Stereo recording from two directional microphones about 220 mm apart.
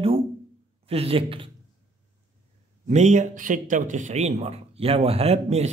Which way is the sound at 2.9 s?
30° right (ahead or behind).